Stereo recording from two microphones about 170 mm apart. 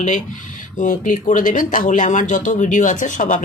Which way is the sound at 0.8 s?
50° left (ahead or behind).